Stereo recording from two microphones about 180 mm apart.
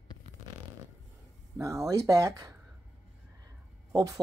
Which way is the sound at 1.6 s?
15° right (ahead or behind).